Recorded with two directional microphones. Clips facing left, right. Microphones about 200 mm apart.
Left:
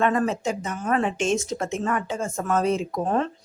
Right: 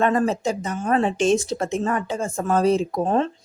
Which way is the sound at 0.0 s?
35° right (ahead or behind).